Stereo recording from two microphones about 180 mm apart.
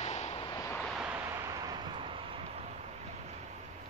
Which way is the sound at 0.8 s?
5° right (ahead or behind).